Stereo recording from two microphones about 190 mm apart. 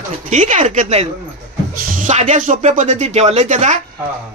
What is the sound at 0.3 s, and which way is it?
Speech, 40° right (ahead or behind).